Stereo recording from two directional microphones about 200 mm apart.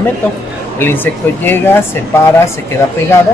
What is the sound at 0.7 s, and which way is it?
Speech, 10° left (ahead or behind).